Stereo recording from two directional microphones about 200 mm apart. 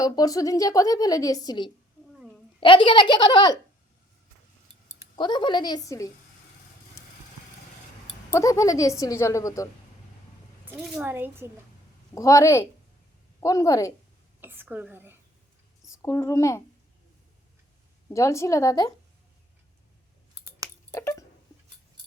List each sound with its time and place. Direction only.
0.0 s a woman's voice: 15° left (ahead or behind)
5.1 s a child's voice: 25° left (ahead or behind)
8.3 s a woman's voice: 15° left (ahead or behind)
10.8 s a woman's voice: 10° right (ahead or behind)
12.1 s a woman's voice: 15° left (ahead or behind)
14.4 s a woman's voice: 10° right (ahead or behind)
16.0 s a woman's voice: 15° left (ahead or behind)
18.1 s a woman's voice: 15° left (ahead or behind)
20.9 s a sound: 15° left (ahead or behind)